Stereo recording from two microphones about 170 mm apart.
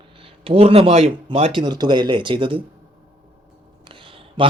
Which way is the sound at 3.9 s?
30° right (ahead or behind).